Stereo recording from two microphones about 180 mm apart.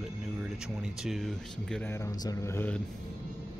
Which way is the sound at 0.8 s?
Centre (ahead or behind).